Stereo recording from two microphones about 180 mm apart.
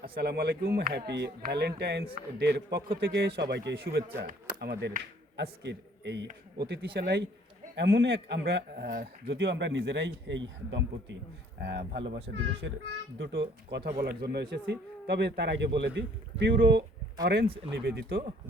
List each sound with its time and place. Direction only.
0.2 s a man's voice: 65° right (ahead or behind)
6.2 s a man's voice: 55° right (ahead or behind)
9.3 s a man's voice: 80° right
11.6 s a man's voice: 70° right (ahead or behind)
12.6 s a man's voice: 80° right
14.0 s a man's voice: 60° right (ahead or behind)
17.2 s a man's voice: 60° right (ahead or behind)